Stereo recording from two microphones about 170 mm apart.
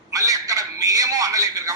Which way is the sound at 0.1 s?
20° right (ahead or behind).